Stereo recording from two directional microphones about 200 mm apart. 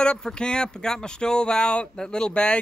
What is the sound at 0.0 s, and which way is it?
Speech, 5° left (ahead or behind).